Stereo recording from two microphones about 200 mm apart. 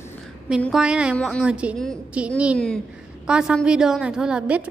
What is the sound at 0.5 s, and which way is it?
A woman's voice, centre (ahead or behind).